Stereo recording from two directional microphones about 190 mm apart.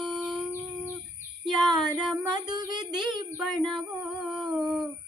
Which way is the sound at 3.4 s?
Centre (ahead or behind).